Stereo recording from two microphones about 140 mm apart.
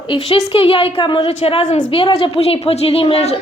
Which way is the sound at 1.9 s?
40° left (ahead or behind).